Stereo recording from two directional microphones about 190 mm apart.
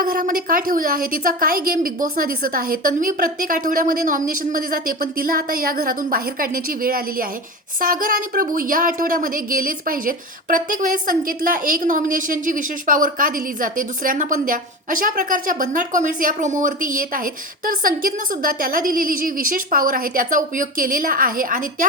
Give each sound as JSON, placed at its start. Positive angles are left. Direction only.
{"t": 0.0, "sound": "a woman's voice", "side_deg": -50}